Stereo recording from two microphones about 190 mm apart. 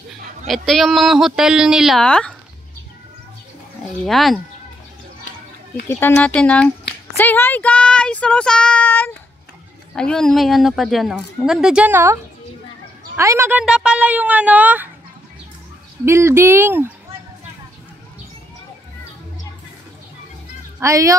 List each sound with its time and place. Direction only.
0.5 s speech: centre (ahead or behind)
3.8 s speech: centre (ahead or behind)
5.9 s a woman's voice: 10° left (ahead or behind); by 14.9 s 10° right (ahead or behind)
16.1 s a woman's voice: 15° right (ahead or behind)
20.8 s a woman's voice: 15° right (ahead or behind)